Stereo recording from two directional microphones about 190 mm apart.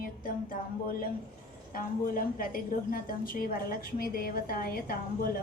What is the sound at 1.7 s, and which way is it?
A woman's voice, 50° left (ahead or behind).